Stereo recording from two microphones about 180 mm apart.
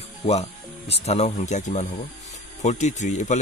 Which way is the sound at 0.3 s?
35° left (ahead or behind).